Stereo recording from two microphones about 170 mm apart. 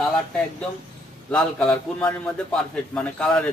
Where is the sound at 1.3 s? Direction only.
5° left (ahead or behind).